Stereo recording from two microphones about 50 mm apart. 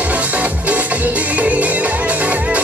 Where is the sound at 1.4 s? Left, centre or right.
Right.